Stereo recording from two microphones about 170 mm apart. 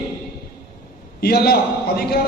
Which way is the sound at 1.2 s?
65° left (ahead or behind).